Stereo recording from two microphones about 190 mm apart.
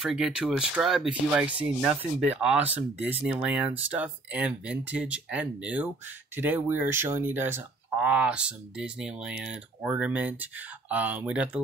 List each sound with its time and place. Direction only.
0.0 s speech: 5° right (ahead or behind)